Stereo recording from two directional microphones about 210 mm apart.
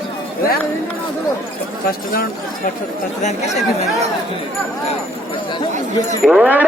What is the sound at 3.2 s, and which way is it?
Speech, 30° left (ahead or behind).